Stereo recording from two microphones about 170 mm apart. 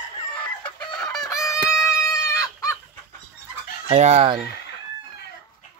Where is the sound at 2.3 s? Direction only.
20° left (ahead or behind).